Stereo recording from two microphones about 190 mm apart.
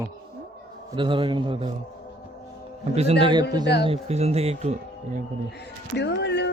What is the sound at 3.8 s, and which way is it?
Speech, 30° right (ahead or behind).